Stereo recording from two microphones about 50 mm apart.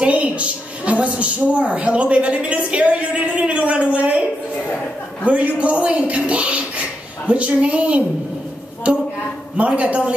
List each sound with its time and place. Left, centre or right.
0.0 s a sound: right
5.2 s a man's voice: right
9.7 s a man's voice: right